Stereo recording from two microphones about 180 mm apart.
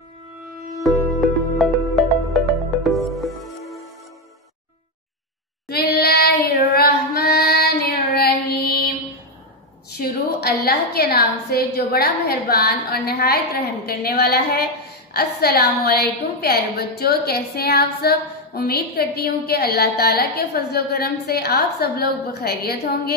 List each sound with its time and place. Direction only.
0.4 s music: centre (ahead or behind)
5.7 s child singing: 60° left (ahead or behind)
9.8 s a sound: 60° left (ahead or behind)
13.8 s a woman's voice: 60° left (ahead or behind)